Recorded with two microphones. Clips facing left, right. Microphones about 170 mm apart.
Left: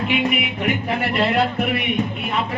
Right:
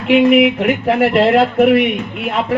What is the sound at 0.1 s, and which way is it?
Speech, 90° right.